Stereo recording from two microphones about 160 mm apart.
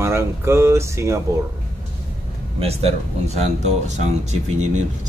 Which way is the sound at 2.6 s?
40° right (ahead or behind).